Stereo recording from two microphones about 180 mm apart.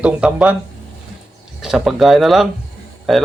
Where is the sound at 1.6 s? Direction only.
Centre (ahead or behind).